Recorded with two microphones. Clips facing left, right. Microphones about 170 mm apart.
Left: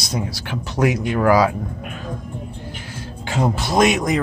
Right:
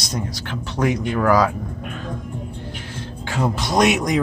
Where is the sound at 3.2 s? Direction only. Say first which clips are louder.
Left 2 dB; 20° left (ahead or behind).